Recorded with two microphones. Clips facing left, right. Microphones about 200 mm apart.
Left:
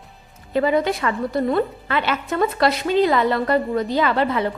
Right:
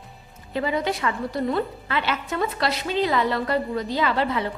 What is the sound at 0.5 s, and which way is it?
A woman's voice, 55° left (ahead or behind).